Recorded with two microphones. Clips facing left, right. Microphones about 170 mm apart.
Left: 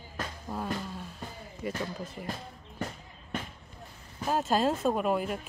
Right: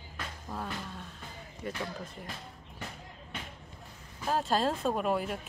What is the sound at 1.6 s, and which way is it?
Speech, 5° left (ahead or behind).